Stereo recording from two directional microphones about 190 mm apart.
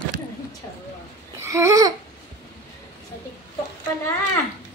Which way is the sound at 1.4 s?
15° right (ahead or behind).